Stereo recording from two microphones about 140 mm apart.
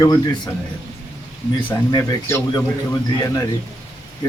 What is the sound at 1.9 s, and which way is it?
Speech, 25° left (ahead or behind).